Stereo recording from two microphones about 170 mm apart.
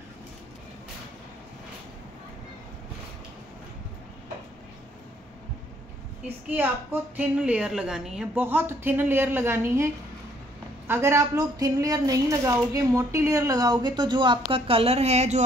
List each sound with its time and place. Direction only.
6.2 s a woman's voice: 10° right (ahead or behind)
10.9 s a woman's voice: 15° right (ahead or behind); by 15.4 s 40° right (ahead or behind)